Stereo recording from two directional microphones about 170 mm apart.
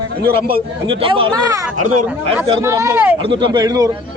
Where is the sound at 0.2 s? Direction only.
65° right (ahead or behind).